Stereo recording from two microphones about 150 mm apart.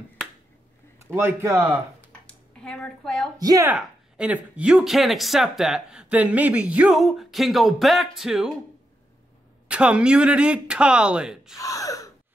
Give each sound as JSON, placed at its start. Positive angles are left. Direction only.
{"t": 1.1, "sound": "speech", "side_deg": -15}
{"t": 2.2, "sound": "a sound", "side_deg": 5}
{"t": 3.3, "sound": "speech", "side_deg": -25}
{"t": 3.6, "sound": "speech", "side_deg": -10}
{"t": 9.7, "sound": "speech", "side_deg": -5}
{"t": 11.5, "sound": "gasp", "side_deg": 25}